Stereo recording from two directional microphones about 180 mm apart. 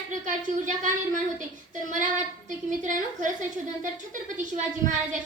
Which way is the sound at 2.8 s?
45° right (ahead or behind).